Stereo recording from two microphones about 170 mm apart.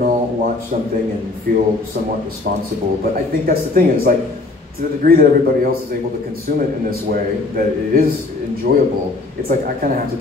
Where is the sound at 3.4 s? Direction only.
60° right (ahead or behind).